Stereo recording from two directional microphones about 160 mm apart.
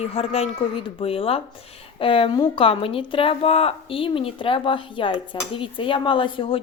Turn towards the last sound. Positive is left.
turn(degrees=30)  # may be behind; listen again after turning